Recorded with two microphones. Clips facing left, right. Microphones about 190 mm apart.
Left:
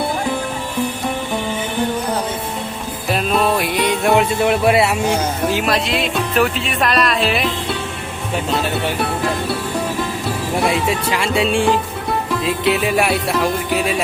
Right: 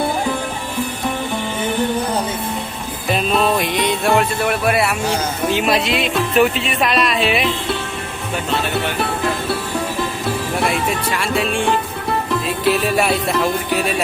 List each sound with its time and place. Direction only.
3.1 s music: centre (ahead or behind)
11.2 s speech: 25° left (ahead or behind)
12.6 s music: 5° left (ahead or behind)